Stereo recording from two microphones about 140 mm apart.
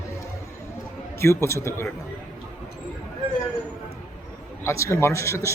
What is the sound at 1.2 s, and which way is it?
Speech, 20° left (ahead or behind).